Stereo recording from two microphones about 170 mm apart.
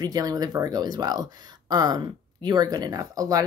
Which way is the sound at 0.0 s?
25° right (ahead or behind).